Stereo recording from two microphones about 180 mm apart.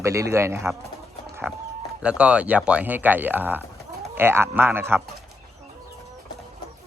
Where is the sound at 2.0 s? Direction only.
5° right (ahead or behind).